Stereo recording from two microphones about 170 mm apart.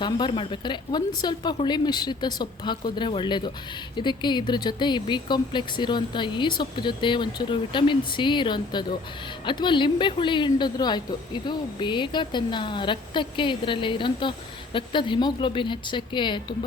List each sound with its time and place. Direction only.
0.0 s a woman's voice: 30° left (ahead or behind)